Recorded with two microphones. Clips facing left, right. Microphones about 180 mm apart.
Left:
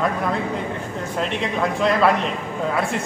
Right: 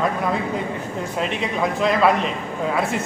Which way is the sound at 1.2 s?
5° right (ahead or behind).